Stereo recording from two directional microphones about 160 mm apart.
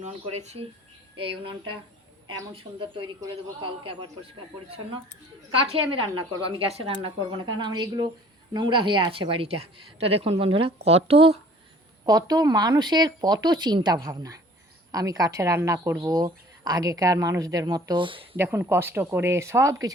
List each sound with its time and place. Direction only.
0.0 s speech: 45° right (ahead or behind)
1.1 s speech: 30° right (ahead or behind)
2.5 s a woman's voice: 35° right (ahead or behind)
5.6 s a woman's voice: 35° right (ahead or behind)
12.0 s a woman's voice: 25° right (ahead or behind)
18.3 s speech: 15° right (ahead or behind)